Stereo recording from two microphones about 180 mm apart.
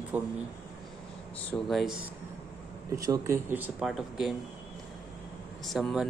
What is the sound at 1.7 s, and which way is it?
Speech, centre (ahead or behind).